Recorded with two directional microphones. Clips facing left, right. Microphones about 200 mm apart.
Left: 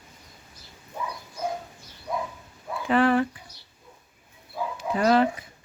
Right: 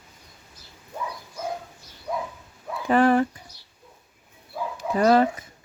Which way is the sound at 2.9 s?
40° right (ahead or behind).